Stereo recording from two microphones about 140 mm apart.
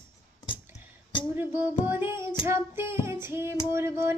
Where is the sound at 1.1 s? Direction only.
35° left (ahead or behind).